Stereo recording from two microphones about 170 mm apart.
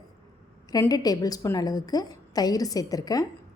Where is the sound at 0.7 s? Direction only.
20° left (ahead or behind).